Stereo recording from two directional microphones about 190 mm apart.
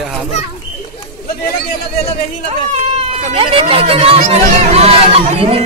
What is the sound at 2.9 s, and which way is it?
Speech, 30° right (ahead or behind).